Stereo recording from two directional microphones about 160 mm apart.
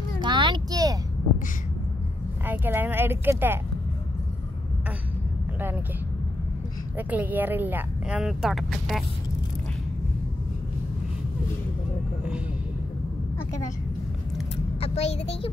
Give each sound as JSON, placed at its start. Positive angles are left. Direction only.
{"t": 0.2, "sound": "a sound", "side_deg": -30}
{"t": 2.4, "sound": "speech", "side_deg": -10}
{"t": 7.0, "sound": "speech", "side_deg": -10}
{"t": 14.8, "sound": "a child's voice", "side_deg": 40}